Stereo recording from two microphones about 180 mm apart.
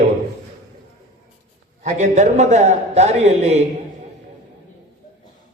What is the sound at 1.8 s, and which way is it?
A man's voice, 40° right (ahead or behind).